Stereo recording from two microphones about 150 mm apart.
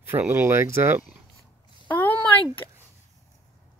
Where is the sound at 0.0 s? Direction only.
15° right (ahead or behind).